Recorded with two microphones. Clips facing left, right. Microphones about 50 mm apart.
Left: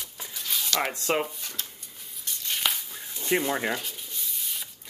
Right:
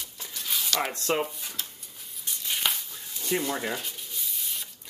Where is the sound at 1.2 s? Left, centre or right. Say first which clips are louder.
Right 1 dB; centre.